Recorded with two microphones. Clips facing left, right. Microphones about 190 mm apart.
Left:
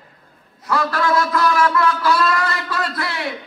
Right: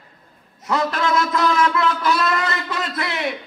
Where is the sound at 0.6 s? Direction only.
20° right (ahead or behind).